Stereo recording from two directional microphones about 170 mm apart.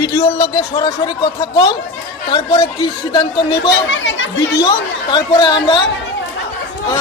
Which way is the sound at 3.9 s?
90° left.